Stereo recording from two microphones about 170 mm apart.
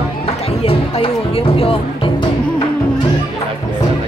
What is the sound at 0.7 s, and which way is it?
Speech, 35° left (ahead or behind).